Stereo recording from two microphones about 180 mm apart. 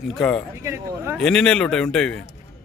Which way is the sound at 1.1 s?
5° left (ahead or behind).